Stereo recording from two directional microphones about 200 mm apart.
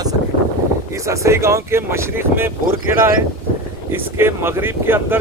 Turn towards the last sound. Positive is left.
turn(degrees=-10)  # may be behind; listen again after turning